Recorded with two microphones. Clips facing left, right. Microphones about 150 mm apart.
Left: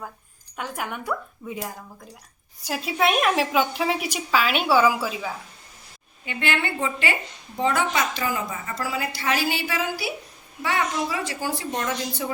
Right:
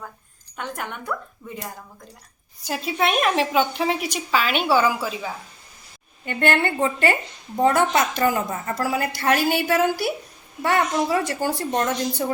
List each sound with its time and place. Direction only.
0.5 s a woman's voice: 5° left (ahead or behind)
6.2 s a woman's voice: 45° right (ahead or behind)